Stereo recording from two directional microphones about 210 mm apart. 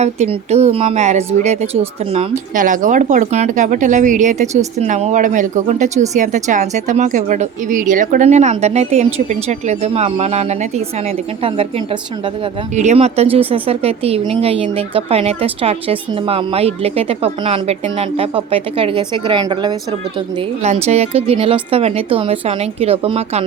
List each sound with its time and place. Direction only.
0.0 s speech: 30° right (ahead or behind)